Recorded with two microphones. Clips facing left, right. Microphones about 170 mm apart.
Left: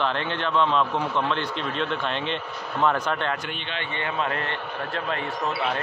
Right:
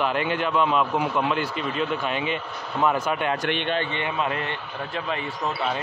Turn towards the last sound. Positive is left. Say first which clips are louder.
# even
turn(degrees=-15)  # may be behind; listen again after turning